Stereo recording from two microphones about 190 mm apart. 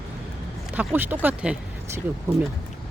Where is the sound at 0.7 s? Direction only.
10° right (ahead or behind).